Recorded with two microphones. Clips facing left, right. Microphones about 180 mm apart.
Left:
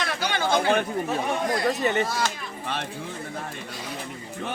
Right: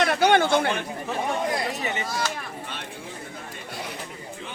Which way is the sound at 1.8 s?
65° left (ahead or behind).